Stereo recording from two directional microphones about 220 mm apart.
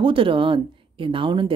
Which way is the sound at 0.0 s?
25° right (ahead or behind).